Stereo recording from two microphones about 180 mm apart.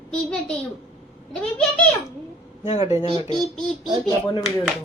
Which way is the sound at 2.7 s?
40° left (ahead or behind).